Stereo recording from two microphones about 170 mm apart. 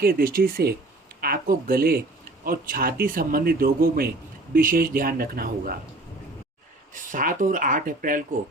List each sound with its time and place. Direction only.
0.0 s speech: 60° right (ahead or behind)
6.9 s speech: 50° right (ahead or behind)